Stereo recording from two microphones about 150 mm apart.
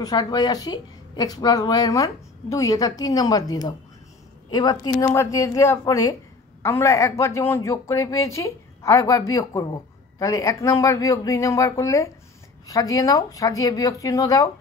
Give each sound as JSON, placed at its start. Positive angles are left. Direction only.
{"t": 0.0, "sound": "speech", "side_deg": 25}